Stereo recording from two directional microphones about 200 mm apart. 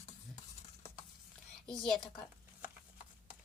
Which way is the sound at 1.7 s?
Centre (ahead or behind).